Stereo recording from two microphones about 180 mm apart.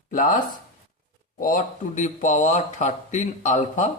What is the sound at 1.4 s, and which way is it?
Speech, 50° left (ahead or behind).